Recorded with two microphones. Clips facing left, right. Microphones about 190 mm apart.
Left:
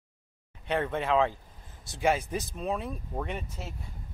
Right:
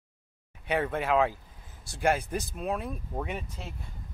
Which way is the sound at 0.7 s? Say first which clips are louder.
Even; 5° right (ahead or behind).